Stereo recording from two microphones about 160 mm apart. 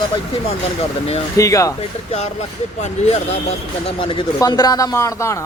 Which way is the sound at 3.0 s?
45° left (ahead or behind).